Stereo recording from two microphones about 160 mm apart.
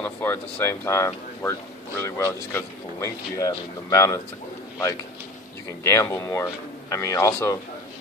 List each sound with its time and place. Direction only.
0.0 s speech: 10° left (ahead or behind)
5.9 s speech: 20° left (ahead or behind)